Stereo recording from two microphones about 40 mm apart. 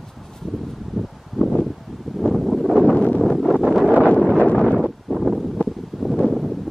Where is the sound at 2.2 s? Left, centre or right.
Centre.